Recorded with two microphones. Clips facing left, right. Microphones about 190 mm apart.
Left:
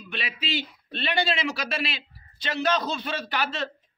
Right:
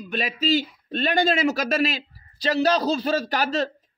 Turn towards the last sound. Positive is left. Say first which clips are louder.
# right 5 dB
turn(degrees=-40)  # may be behind; listen again after turning